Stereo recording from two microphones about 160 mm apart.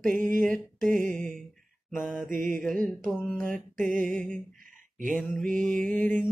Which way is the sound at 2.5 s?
Centre (ahead or behind).